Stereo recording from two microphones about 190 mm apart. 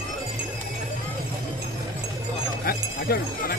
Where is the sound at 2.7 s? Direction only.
50° left (ahead or behind).